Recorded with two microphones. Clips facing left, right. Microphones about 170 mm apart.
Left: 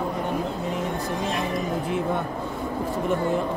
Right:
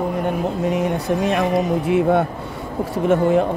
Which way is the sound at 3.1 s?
90° right.